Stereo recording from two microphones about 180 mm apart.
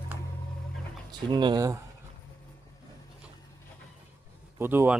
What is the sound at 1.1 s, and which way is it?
Speech, 25° right (ahead or behind).